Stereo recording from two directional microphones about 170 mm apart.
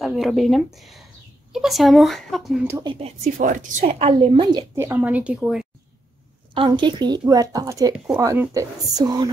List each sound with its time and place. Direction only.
0.0 s a woman's voice: centre (ahead or behind)
2.8 s a woman's voice: 30° right (ahead or behind)
4.7 s a woman's voice: 15° right (ahead or behind)
6.5 s a woman's voice: 30° right (ahead or behind)